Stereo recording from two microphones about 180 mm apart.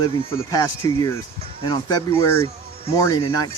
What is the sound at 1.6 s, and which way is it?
Speech, 25° left (ahead or behind).